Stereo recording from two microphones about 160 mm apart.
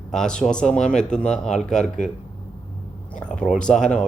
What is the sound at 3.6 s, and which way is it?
Speech, 5° left (ahead or behind).